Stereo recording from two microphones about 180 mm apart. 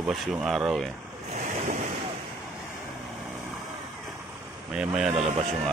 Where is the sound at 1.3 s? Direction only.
45° right (ahead or behind).